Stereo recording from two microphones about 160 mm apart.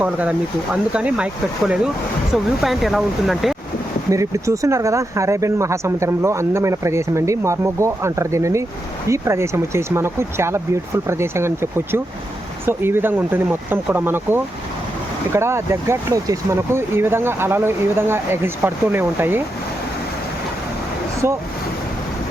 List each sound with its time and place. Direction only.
0.0 s speech: 10° right (ahead or behind)
4.1 s speech: 20° right (ahead or behind)